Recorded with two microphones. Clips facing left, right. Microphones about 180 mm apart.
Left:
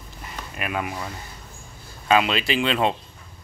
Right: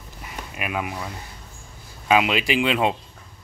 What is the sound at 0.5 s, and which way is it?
Speech, 5° right (ahead or behind).